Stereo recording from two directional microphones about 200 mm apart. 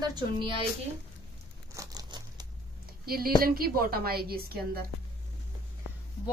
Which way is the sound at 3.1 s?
50° right (ahead or behind).